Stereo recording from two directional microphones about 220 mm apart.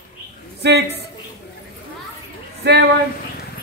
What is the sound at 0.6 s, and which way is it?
Speech, 45° right (ahead or behind).